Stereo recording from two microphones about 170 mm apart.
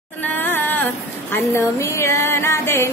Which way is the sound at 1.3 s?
15° left (ahead or behind).